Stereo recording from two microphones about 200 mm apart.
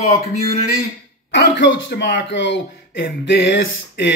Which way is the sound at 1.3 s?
60° left (ahead or behind).